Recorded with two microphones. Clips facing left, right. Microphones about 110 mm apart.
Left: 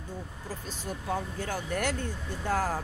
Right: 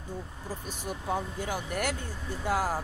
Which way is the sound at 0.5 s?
15° right (ahead or behind).